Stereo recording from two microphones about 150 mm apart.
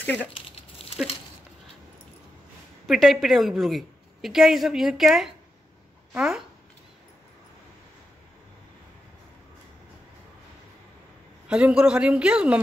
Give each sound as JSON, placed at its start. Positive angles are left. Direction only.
{"t": 0.0, "sound": "speech", "side_deg": 10}
{"t": 0.3, "sound": "a sound", "side_deg": 40}
{"t": 2.9, "sound": "a woman's voice", "side_deg": 0}
{"t": 11.4, "sound": "speech", "side_deg": -5}